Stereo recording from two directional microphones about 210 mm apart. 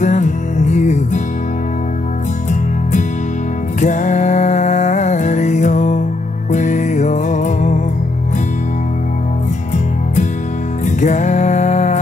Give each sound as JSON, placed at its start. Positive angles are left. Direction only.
{"t": 0.0, "sound": "music", "side_deg": 35}
{"t": 3.8, "sound": "music", "side_deg": 35}
{"t": 10.9, "sound": "music", "side_deg": 35}